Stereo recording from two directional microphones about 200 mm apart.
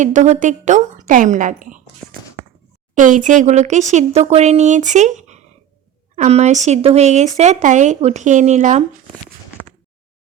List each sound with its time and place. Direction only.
0.0 s speech: 35° right (ahead or behind)
2.9 s speech: 40° right (ahead or behind)